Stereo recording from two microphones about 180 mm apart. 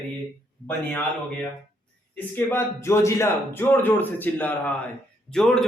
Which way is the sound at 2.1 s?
10° left (ahead or behind).